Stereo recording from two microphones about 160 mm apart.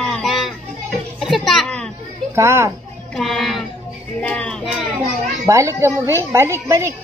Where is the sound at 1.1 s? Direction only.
Centre (ahead or behind).